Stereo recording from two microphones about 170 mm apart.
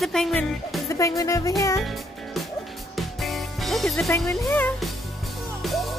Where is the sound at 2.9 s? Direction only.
Centre (ahead or behind).